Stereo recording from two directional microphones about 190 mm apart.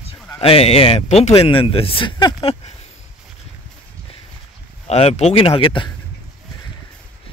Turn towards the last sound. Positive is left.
turn(degrees=25)  # may be behind; listen again after turning